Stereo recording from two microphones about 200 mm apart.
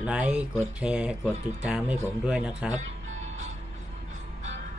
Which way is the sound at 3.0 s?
35° right (ahead or behind).